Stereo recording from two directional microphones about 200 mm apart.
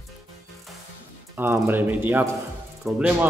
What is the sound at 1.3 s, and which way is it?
A man's voice, 10° right (ahead or behind).